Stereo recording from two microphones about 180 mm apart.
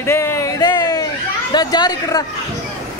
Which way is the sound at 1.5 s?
25° left (ahead or behind).